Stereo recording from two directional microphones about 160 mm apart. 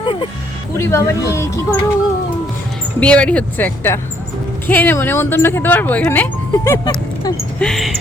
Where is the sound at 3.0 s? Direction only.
5° left (ahead or behind).